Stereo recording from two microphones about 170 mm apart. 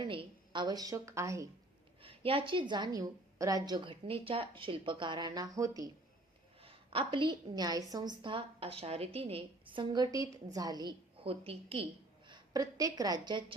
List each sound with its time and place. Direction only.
0.0 s a woman's voice: 30° right (ahead or behind)
2.0 s a woman's voice: 35° right (ahead or behind)
6.6 s a woman's voice: 35° right (ahead or behind)
12.3 s a woman's voice: 20° right (ahead or behind)